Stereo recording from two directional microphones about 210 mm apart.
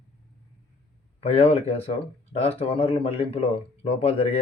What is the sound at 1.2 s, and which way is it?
Speech, 30° left (ahead or behind).